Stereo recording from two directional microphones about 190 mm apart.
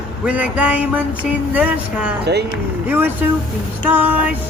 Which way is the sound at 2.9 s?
10° right (ahead or behind).